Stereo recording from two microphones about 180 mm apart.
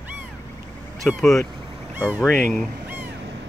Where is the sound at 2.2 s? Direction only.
10° left (ahead or behind).